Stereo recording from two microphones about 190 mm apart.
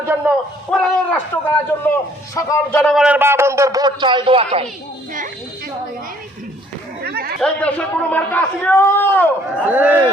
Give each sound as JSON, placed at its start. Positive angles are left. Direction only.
{"t": 0.2, "sound": "a man's voice", "side_deg": -10}
{"t": 0.7, "sound": "a man's voice", "side_deg": 5}
{"t": 7.0, "sound": "chatter", "side_deg": -55}
{"t": 7.3, "sound": "a man's voice", "side_deg": 5}
{"t": 9.6, "sound": "a man's voice", "side_deg": -10}